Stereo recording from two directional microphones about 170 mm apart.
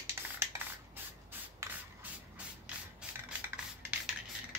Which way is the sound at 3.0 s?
5° right (ahead or behind).